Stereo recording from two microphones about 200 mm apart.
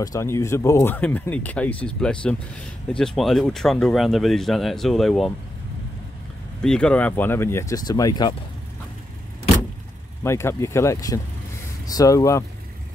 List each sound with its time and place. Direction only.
0.0 s speech: 15° left (ahead or behind)
6.6 s speech: 5° left (ahead or behind); by 8.4 s 20° left (ahead or behind)
10.2 s speech: 15° left (ahead or behind)